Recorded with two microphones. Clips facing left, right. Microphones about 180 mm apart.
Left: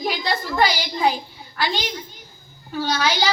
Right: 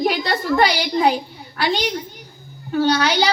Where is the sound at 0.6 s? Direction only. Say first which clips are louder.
Right 2 dB; 65° right (ahead or behind).